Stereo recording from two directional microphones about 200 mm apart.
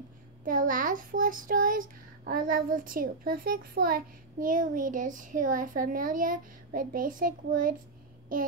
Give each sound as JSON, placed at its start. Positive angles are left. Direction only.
{"t": 0.5, "sound": "a child's voice", "side_deg": -40}